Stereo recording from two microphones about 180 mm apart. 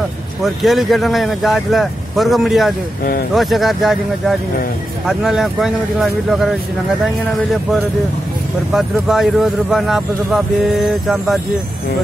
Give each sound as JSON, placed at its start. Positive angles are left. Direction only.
{"t": 0.4, "sound": "speech", "side_deg": 0}
{"t": 3.0, "sound": "a man's voice", "side_deg": 55}
{"t": 3.3, "sound": "speech", "side_deg": 0}
{"t": 8.7, "sound": "speech", "side_deg": 0}